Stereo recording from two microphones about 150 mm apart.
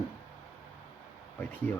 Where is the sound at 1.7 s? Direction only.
10° left (ahead or behind).